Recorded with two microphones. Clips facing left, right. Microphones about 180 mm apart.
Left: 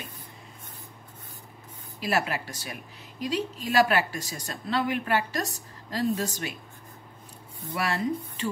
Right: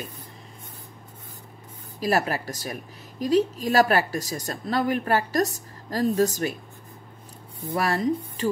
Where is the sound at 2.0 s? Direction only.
40° right (ahead or behind).